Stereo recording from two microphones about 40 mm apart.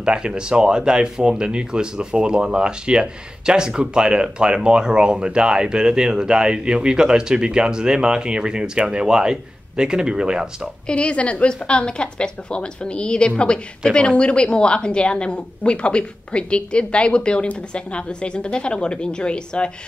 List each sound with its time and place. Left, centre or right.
0.0 s speech: right
10.9 s a woman's voice: left